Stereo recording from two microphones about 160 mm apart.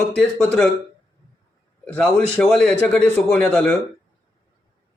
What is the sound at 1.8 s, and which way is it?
A man's voice, 5° left (ahead or behind).